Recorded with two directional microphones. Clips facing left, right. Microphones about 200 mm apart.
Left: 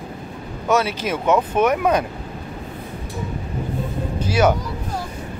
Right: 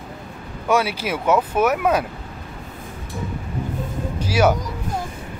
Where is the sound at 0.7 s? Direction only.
10° right (ahead or behind).